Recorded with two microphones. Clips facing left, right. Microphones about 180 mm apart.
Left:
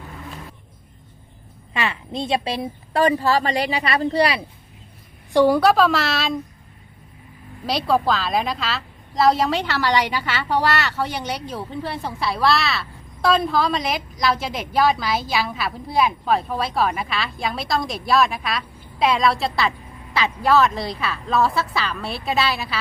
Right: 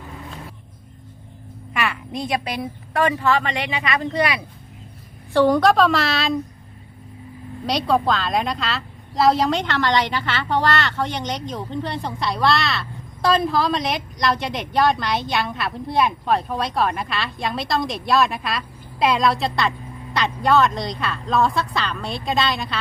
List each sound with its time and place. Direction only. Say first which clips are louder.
1.8 s a woman's voice: even; 25° left (ahead or behind)
5.3 s a woman's voice: even; 10° left (ahead or behind)
7.7 s a woman's voice: even; centre (ahead or behind)